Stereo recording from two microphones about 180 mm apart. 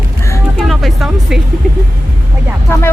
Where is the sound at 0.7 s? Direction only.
Centre (ahead or behind).